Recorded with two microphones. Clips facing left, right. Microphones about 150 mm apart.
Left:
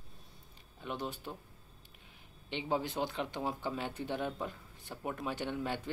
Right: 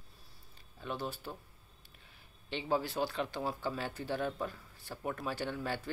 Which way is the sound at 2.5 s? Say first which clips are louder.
Right 1 dB; 20° left (ahead or behind).